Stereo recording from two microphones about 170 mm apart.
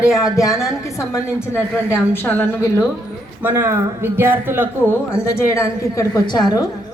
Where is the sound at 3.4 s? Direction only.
10° right (ahead or behind).